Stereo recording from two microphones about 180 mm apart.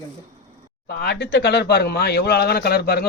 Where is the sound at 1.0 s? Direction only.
70° left (ahead or behind).